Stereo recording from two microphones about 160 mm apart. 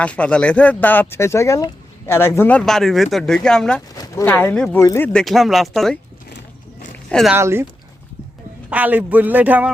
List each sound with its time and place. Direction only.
0.0 s speech: 10° left (ahead or behind)
3.9 s speech: 20° left (ahead or behind); by 6.0 s centre (ahead or behind)
6.3 s a sound: 70° left (ahead or behind)
7.1 s speech: centre (ahead or behind)
7.3 s a man's voice: 15° right (ahead or behind)
8.7 s a man's voice: 10° right (ahead or behind)